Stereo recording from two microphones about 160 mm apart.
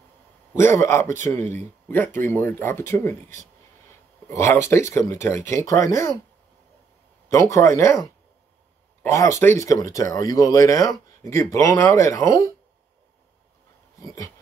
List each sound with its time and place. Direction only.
0.6 s speech: 15° left (ahead or behind)
4.3 s speech: 15° left (ahead or behind)
7.2 s speech: 20° left (ahead or behind)
13.9 s dog: 20° left (ahead or behind)